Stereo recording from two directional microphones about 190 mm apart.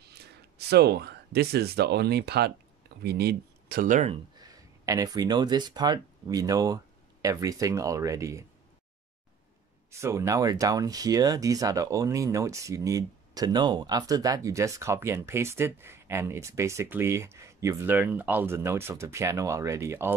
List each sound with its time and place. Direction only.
0.0 s speech: 60° right (ahead or behind); by 4.2 s 40° right (ahead or behind)
4.4 s speech: 20° right (ahead or behind)
9.8 s speech: 15° right (ahead or behind)